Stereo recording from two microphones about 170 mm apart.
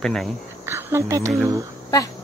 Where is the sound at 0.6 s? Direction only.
15° right (ahead or behind).